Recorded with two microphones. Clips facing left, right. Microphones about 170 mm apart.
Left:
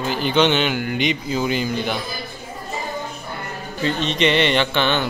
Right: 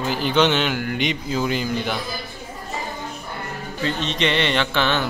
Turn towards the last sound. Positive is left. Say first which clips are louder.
# left 2 dB
turn(degrees=0)  # may be behind; listen again after turning